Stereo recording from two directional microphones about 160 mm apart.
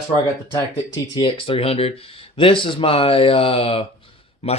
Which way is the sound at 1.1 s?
30° left (ahead or behind).